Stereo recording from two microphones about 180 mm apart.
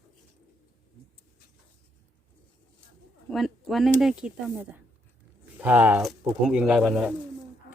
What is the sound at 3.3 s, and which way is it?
Speech, centre (ahead or behind).